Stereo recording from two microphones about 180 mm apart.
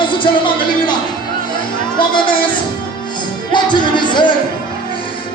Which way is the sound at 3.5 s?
25° left (ahead or behind).